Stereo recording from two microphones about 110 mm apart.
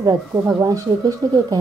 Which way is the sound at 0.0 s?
30° right (ahead or behind).